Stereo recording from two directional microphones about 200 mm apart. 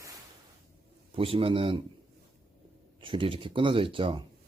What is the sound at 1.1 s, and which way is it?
Speech, 25° right (ahead or behind).